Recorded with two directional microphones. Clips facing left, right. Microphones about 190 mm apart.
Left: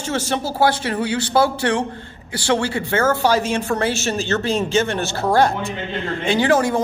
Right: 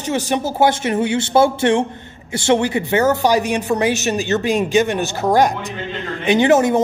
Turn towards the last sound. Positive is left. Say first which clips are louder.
# right 4 dB
turn(degrees=-20)  # may be behind; listen again after turning